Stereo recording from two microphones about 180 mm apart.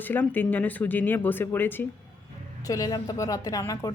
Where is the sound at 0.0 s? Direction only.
10° left (ahead or behind).